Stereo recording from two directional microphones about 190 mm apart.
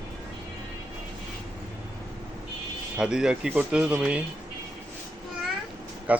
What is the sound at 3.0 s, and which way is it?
Speech, 5° right (ahead or behind).